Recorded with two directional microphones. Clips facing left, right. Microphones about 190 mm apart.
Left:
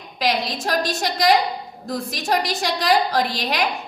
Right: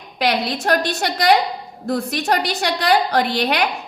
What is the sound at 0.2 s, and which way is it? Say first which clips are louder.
A woman's voice: right 3 dB; 60° right (ahead or behind).